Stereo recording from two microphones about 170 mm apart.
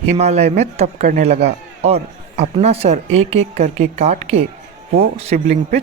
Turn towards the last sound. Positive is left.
turn(degrees=-40)  # may be behind; listen again after turning